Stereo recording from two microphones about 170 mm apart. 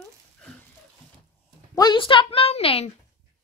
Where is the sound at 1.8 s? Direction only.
25° left (ahead or behind).